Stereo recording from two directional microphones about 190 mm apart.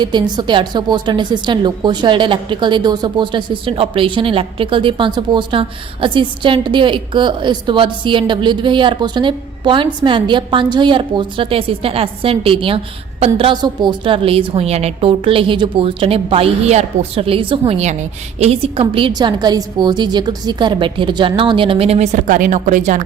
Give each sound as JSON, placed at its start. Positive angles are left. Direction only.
{"t": 0.0, "sound": "a woman's voice", "side_deg": -25}